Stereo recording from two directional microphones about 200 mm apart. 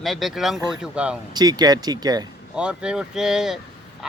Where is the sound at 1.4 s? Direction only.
20° right (ahead or behind).